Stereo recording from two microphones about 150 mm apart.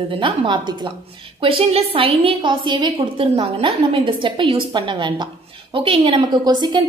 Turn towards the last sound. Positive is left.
turn(degrees=-30)  # may be behind; listen again after turning